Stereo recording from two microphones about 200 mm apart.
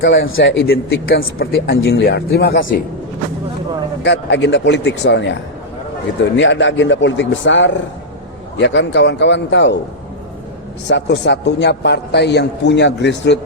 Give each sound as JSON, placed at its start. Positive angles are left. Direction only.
{"t": 0.0, "sound": "a man's voice", "side_deg": 65}
{"t": 0.7, "sound": "speech", "side_deg": 50}
{"t": 4.0, "sound": "a man's voice", "side_deg": 60}
{"t": 10.8, "sound": "a man's voice", "side_deg": 60}